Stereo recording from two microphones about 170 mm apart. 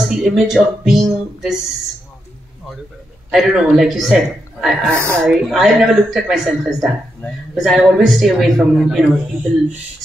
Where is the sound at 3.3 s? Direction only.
Centre (ahead or behind).